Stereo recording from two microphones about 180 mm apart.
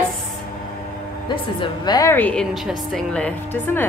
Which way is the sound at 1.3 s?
25° left (ahead or behind).